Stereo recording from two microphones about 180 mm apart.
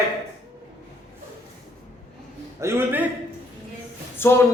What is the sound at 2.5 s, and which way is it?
Speech, 15° right (ahead or behind).